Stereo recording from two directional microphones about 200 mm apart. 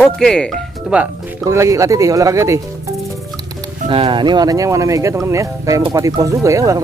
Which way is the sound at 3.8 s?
30° right (ahead or behind).